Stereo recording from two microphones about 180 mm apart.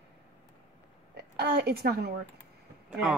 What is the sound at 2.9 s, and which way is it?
Speech, centre (ahead or behind).